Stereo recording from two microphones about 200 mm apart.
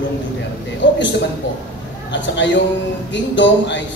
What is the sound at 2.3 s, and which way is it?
A man's voice, 65° left (ahead or behind).